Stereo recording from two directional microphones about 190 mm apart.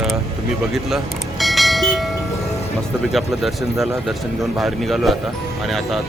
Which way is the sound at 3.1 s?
Centre (ahead or behind).